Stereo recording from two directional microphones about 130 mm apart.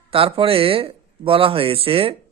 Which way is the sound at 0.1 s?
45° right (ahead or behind).